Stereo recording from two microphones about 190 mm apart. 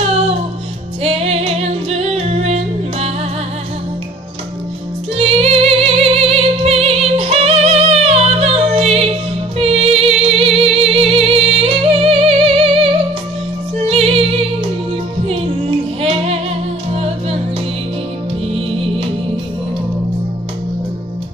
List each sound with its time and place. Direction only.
1.0 s music: 30° right (ahead or behind)
5.1 s music: 30° right (ahead or behind)
13.8 s music: 30° right (ahead or behind)